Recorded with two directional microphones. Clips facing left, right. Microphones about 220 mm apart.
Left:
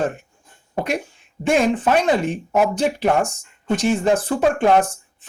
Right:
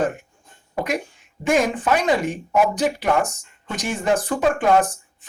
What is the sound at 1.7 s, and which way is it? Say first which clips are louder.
Speech: left 2 dB; 25° left (ahead or behind).